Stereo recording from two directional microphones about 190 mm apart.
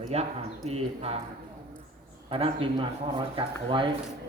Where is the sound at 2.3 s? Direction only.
30° right (ahead or behind).